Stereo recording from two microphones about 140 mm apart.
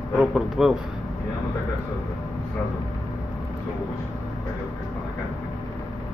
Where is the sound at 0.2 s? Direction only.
5° right (ahead or behind).